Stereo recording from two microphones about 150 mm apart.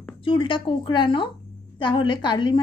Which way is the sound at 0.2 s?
35° left (ahead or behind).